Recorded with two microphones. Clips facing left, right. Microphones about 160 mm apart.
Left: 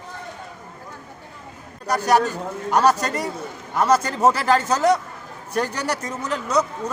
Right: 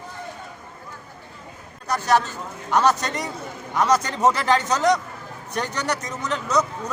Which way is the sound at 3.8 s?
5° left (ahead or behind).